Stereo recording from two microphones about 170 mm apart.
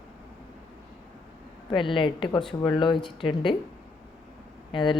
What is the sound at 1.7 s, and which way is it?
A woman's voice, 30° left (ahead or behind).